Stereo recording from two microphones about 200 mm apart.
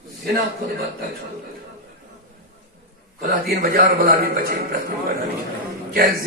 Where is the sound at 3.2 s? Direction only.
45° right (ahead or behind).